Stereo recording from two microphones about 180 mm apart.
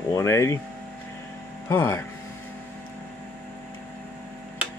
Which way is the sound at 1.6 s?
15° left (ahead or behind).